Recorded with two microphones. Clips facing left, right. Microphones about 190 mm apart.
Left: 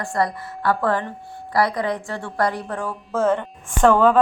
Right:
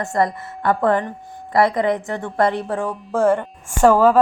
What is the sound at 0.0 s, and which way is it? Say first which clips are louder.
A woman's voice: right 3 dB; 20° right (ahead or behind).